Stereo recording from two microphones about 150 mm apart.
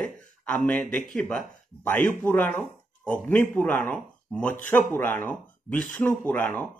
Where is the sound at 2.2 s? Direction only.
10° left (ahead or behind).